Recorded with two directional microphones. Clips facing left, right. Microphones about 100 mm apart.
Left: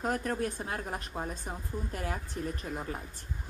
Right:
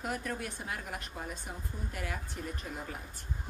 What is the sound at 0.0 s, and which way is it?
A woman's voice, 35° left (ahead or behind).